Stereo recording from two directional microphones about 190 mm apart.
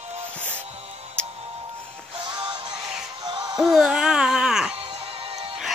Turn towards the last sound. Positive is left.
turn(degrees=-30)  # may be behind; listen again after turning